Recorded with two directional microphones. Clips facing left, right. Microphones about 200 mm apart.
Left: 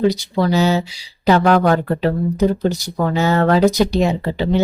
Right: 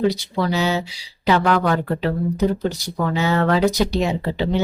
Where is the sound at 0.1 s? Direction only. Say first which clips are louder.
Left 4 dB; 40° left (ahead or behind).